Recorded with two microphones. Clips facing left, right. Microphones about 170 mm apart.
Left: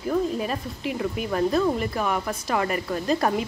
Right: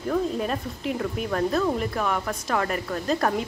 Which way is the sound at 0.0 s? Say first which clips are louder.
Left 1 dB; 5° left (ahead or behind).